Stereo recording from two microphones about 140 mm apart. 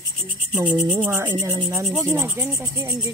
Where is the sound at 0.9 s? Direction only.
15° right (ahead or behind).